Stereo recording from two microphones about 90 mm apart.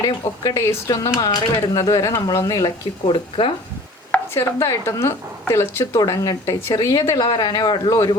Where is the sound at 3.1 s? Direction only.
75° left (ahead or behind).